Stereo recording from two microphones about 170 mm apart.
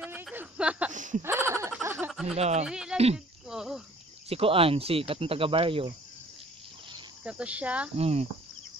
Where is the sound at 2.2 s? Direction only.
40° right (ahead or behind).